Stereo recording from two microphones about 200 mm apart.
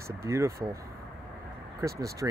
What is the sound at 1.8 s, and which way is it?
Speech, 15° right (ahead or behind).